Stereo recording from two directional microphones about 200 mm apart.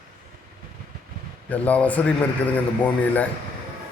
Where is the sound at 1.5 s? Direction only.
5° left (ahead or behind).